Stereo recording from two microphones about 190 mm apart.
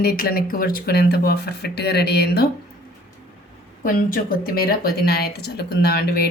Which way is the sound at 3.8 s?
50° left (ahead or behind).